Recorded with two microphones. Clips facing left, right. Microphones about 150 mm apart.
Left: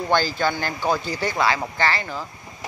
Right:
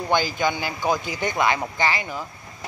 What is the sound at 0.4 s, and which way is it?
Speech, 10° right (ahead or behind).